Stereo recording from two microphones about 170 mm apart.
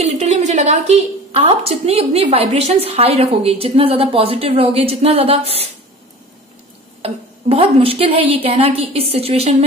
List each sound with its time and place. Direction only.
0.0 s a woman's voice: 40° right (ahead or behind)
7.0 s a woman's voice: 35° right (ahead or behind)